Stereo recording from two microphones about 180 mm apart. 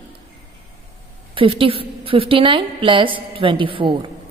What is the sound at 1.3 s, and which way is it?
A woman's voice, 30° right (ahead or behind).